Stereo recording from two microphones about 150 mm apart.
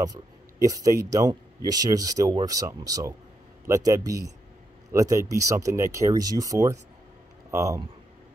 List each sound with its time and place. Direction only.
0.0 s speech: 25° right (ahead or behind)